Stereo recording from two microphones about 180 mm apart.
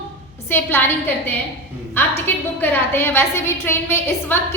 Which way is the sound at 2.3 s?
10° left (ahead or behind).